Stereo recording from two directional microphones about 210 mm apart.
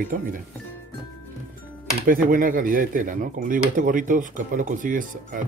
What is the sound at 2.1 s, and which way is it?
Speech, 40° right (ahead or behind).